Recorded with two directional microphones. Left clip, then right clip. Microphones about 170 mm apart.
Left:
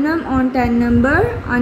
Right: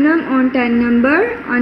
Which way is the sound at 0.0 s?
10° left (ahead or behind).